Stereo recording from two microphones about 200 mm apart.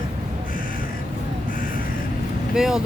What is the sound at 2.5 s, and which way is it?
Boat, 5° right (ahead or behind).